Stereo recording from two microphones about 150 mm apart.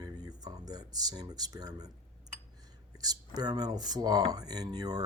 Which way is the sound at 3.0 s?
25° right (ahead or behind).